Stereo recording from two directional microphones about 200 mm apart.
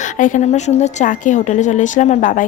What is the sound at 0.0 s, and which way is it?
A woman's voice, 40° left (ahead or behind).